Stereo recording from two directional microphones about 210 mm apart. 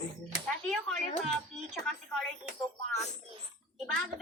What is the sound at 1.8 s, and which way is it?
Speech, centre (ahead or behind).